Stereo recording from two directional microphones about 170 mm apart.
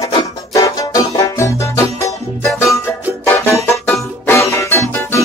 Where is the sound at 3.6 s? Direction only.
15° left (ahead or behind).